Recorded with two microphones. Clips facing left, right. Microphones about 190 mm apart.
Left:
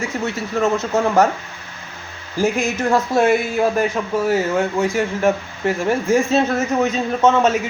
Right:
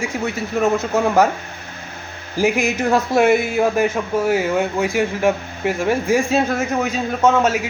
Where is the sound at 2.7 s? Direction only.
15° right (ahead or behind).